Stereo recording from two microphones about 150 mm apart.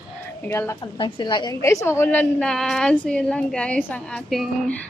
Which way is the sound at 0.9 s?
30° left (ahead or behind).